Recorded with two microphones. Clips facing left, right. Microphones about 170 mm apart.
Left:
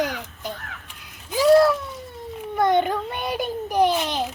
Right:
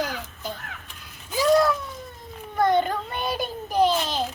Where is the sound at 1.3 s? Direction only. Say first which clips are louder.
Left 4 dB; 10° left (ahead or behind).